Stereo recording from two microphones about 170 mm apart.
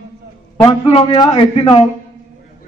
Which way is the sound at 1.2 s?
35° left (ahead or behind).